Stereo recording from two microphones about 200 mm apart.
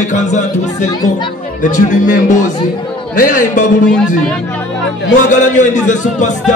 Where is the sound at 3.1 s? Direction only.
40° left (ahead or behind).